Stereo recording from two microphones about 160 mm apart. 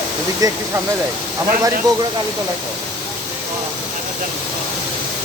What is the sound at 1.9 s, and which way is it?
Speech, 25° right (ahead or behind).